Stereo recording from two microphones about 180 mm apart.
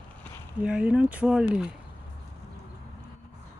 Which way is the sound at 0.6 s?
5° right (ahead or behind).